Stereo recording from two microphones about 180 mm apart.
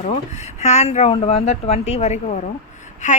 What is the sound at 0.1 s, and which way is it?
Speech, 40° left (ahead or behind).